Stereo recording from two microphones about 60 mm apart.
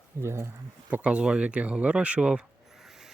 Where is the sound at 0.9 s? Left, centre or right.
Centre.